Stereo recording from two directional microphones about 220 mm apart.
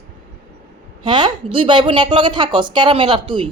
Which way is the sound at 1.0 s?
20° right (ahead or behind).